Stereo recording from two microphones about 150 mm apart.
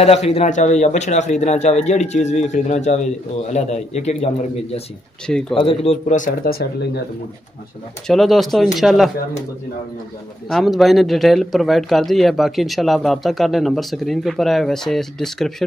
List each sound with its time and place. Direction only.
0.0 s a man's voice: 45° left (ahead or behind)
5.5 s speech: 35° left (ahead or behind)
6.1 s speech: 70° left (ahead or behind); by 6.9 s 90° left
8.1 s a man's voice: centre (ahead or behind)
10.5 s a man's voice: centre (ahead or behind)